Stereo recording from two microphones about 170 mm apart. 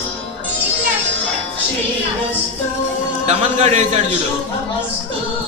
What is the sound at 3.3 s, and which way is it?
Speech, 40° right (ahead or behind).